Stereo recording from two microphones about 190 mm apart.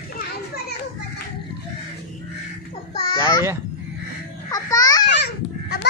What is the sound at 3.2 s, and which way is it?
Speech, 15° right (ahead or behind).